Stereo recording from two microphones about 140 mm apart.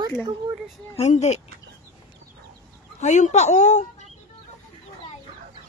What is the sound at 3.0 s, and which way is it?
Speech, 60° left (ahead or behind).